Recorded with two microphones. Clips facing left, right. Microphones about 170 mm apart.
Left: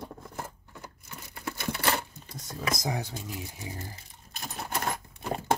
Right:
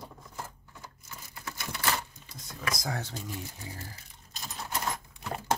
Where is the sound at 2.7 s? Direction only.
20° left (ahead or behind).